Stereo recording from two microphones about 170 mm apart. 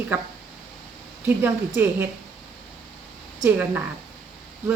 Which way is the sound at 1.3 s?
10° right (ahead or behind).